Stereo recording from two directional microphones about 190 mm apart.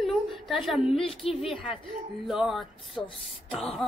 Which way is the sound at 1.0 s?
30° left (ahead or behind).